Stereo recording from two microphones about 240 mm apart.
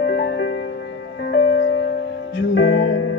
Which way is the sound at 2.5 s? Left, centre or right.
Left.